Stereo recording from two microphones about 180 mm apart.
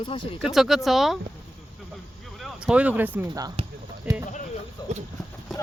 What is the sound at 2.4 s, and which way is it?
Speech, 5° right (ahead or behind).